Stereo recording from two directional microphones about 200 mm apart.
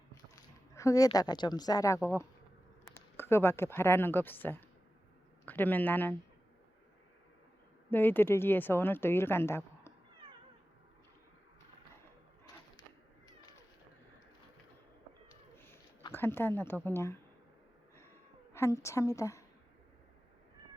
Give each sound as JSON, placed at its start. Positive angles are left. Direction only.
{"t": 0.8, "sound": "speech", "side_deg": 15}
{"t": 7.9, "sound": "speech", "side_deg": 10}
{"t": 15.5, "sound": "a sound", "side_deg": 10}
{"t": 16.1, "sound": "speech", "side_deg": 10}
{"t": 18.5, "sound": "speech", "side_deg": 15}